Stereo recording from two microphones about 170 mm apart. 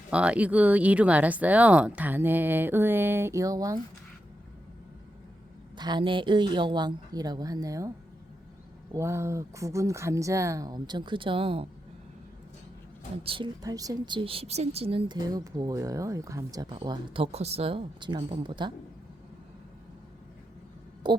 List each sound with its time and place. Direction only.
0.1 s speech: 5° right (ahead or behind)
5.7 s a woman's voice: 25° right (ahead or behind)
13.2 s a woman's voice: 30° right (ahead or behind)
21.0 s a woman's voice: 25° right (ahead or behind)